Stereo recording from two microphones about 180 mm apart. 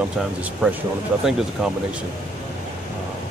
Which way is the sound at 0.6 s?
10° right (ahead or behind).